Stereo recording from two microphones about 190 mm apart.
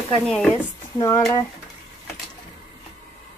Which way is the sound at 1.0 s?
15° left (ahead or behind).